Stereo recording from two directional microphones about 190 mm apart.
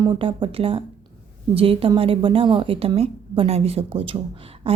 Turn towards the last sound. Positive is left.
turn(degrees=-30)  # may be behind; listen again after turning